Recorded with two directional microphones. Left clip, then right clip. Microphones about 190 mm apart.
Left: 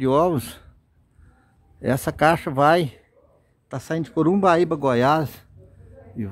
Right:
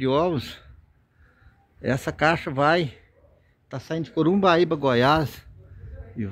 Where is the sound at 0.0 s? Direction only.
20° left (ahead or behind).